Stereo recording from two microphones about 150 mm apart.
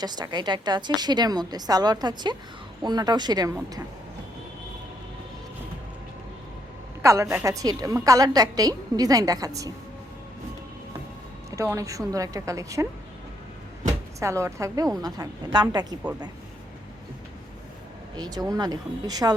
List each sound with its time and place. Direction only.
0.0 s a woman's voice: 30° right (ahead or behind)
7.0 s a woman's voice: 20° right (ahead or behind)
11.5 s a woman's voice: 20° right (ahead or behind)
14.2 s a woman's voice: 20° right (ahead or behind)
18.2 s a woman's voice: 25° right (ahead or behind)